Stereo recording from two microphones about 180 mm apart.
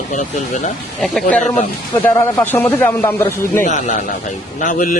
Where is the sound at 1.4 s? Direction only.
40° left (ahead or behind).